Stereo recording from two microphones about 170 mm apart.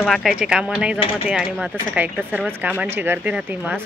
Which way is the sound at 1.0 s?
35° left (ahead or behind).